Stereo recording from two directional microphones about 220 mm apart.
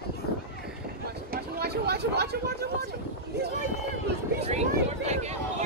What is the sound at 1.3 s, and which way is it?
Vehicle, 45° right (ahead or behind).